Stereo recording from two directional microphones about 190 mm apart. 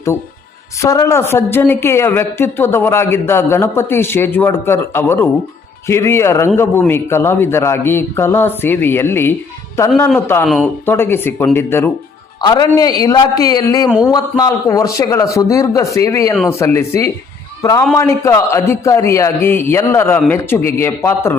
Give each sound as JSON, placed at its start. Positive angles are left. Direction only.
{"t": 0.8, "sound": "speech", "side_deg": 15}
{"t": 10.4, "sound": "speech", "side_deg": 0}
{"t": 12.4, "sound": "a man's voice", "side_deg": 20}